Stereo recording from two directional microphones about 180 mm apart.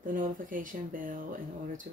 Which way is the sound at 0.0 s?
50° right (ahead or behind).